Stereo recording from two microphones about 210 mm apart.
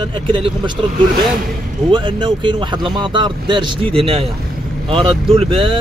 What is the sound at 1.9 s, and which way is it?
Speech, 25° right (ahead or behind).